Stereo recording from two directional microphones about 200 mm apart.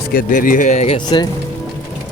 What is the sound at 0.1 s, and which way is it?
Speech, 45° left (ahead or behind).